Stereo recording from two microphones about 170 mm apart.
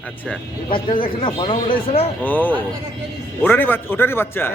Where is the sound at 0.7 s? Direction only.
30° left (ahead or behind).